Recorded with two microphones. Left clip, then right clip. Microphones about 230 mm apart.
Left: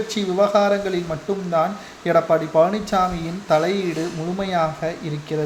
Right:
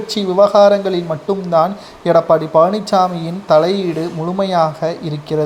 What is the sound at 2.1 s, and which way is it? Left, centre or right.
Speech, right.